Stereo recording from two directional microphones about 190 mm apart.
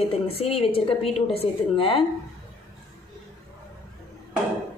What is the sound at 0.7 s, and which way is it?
A woman's voice, 30° left (ahead or behind).